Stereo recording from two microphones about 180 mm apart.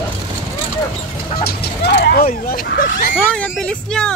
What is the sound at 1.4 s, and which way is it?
Speech, 60° left (ahead or behind).